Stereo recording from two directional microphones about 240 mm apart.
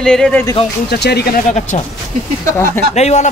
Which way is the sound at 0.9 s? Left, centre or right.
Left.